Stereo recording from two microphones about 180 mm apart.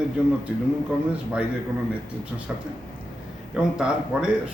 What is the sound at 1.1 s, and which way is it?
Speech, 5° right (ahead or behind).